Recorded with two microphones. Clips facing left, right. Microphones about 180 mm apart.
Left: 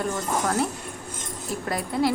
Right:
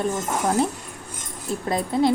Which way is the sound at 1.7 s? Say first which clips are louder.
Right 4 dB; 25° right (ahead or behind).